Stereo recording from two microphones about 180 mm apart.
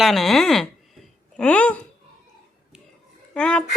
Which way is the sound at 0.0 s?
Centre (ahead or behind).